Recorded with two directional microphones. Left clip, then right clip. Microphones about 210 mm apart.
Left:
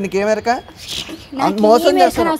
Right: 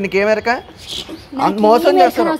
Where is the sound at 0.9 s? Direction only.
50° left (ahead or behind).